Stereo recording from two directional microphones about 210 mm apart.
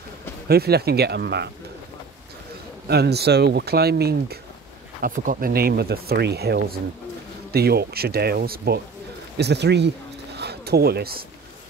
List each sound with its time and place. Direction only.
0.5 s speech: 50° right (ahead or behind)
2.9 s speech: 50° right (ahead or behind)
10.3 s a sound: 50° right (ahead or behind)